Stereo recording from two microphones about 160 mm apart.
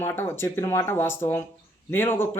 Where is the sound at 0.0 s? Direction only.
15° left (ahead or behind).